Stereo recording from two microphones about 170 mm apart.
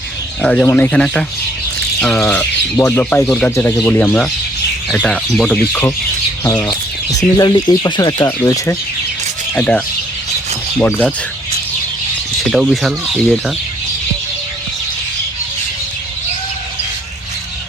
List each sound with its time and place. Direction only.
0.4 s speech: 5° left (ahead or behind)
9.6 s speech: 10° left (ahead or behind)
12.5 s speech: centre (ahead or behind)